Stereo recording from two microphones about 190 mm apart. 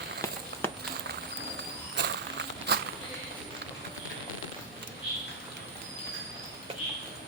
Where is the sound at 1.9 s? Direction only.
65° right (ahead or behind).